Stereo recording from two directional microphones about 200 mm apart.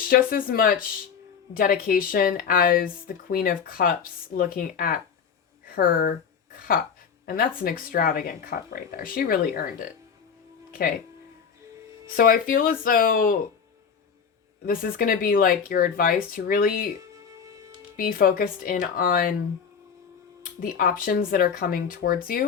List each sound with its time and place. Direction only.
0.0 s speech: 45° left (ahead or behind)
10.7 s music: 45° left (ahead or behind)
12.1 s speech: 45° left (ahead or behind)
14.6 s speech: 45° left (ahead or behind)
17.9 s speech: 45° left (ahead or behind)
20.6 s speech: 45° left (ahead or behind)